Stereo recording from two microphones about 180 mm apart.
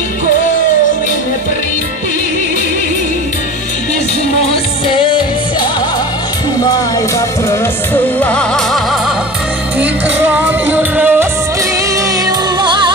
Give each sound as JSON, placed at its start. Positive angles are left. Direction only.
{"t": 4.8, "sound": "music", "side_deg": 30}
{"t": 7.2, "sound": "music", "side_deg": 15}
{"t": 9.8, "sound": "music", "side_deg": -10}
{"t": 12.3, "sound": "music", "side_deg": -25}